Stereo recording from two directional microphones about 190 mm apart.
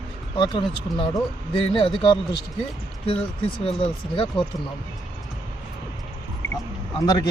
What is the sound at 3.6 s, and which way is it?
Speech, 30° left (ahead or behind).